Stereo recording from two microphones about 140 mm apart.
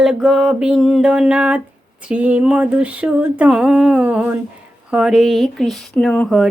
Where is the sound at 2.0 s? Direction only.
10° right (ahead or behind).